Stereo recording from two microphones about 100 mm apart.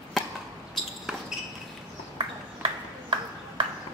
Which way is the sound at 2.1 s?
55° right (ahead or behind).